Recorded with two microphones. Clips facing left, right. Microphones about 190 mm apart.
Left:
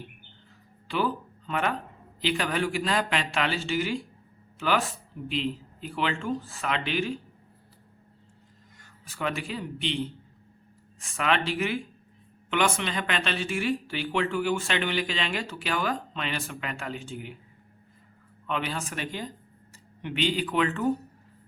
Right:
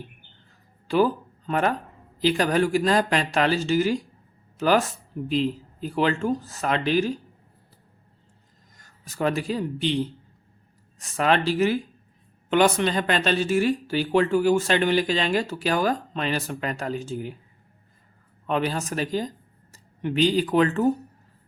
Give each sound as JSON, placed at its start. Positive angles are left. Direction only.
{"t": 0.9, "sound": "speech", "side_deg": -40}
{"t": 8.8, "sound": "speech", "side_deg": -40}
{"t": 18.4, "sound": "speech", "side_deg": -40}